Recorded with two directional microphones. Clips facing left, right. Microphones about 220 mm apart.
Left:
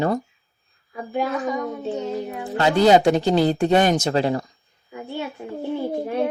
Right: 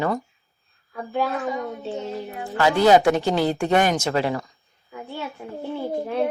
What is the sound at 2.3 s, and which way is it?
Speech, 35° left (ahead or behind).